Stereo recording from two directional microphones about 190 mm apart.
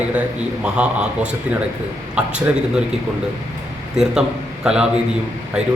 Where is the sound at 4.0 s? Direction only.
5° right (ahead or behind).